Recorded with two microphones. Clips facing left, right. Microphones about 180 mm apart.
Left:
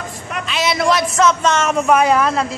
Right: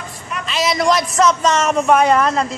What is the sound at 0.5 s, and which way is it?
Speech, centre (ahead or behind).